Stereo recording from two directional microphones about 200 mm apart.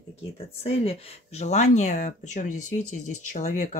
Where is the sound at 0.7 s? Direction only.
30° left (ahead or behind).